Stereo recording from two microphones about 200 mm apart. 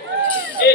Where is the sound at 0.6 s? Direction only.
55° left (ahead or behind).